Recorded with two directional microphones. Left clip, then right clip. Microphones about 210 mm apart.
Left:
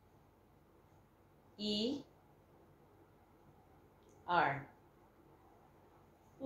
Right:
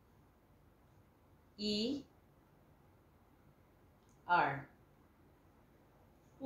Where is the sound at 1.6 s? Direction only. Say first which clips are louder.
Even; 10° right (ahead or behind).